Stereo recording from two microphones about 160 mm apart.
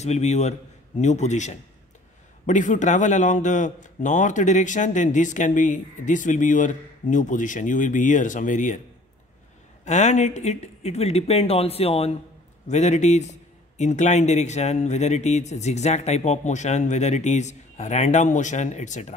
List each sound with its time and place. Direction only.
0.0 s a man's voice: 45° left (ahead or behind)
9.8 s a man's voice: 45° left (ahead or behind)